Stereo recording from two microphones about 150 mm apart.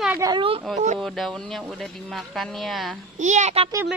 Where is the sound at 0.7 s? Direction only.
50° right (ahead or behind).